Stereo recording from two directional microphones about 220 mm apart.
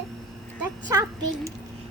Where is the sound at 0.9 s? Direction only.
15° right (ahead or behind).